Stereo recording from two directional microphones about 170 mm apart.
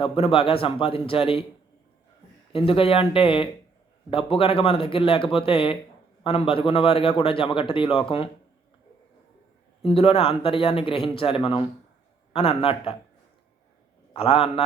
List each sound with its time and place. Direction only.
0.0 s a man's voice: 35° left (ahead or behind)
2.5 s a man's voice: 35° left (ahead or behind)
9.8 s a man's voice: 35° left (ahead or behind)
14.1 s a man's voice: 35° left (ahead or behind)